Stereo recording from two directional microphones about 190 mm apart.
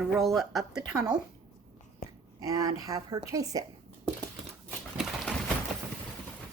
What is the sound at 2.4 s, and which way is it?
Speech, 20° right (ahead or behind).